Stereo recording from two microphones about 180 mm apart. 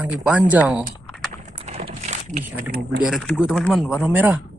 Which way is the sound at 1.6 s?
35° right (ahead or behind).